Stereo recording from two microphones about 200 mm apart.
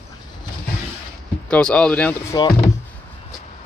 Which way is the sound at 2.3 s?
20° left (ahead or behind).